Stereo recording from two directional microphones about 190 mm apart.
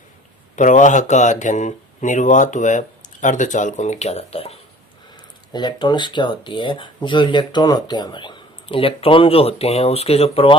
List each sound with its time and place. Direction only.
0.5 s speech: 40° left (ahead or behind)